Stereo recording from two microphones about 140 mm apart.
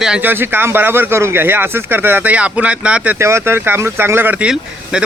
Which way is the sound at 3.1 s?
20° right (ahead or behind).